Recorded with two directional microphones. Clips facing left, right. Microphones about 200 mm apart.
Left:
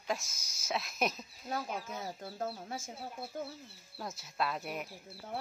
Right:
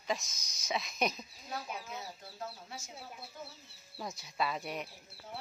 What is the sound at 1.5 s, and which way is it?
Speech, 50° left (ahead or behind).